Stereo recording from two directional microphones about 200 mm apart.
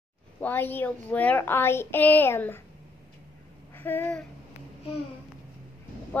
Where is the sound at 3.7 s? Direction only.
10° left (ahead or behind).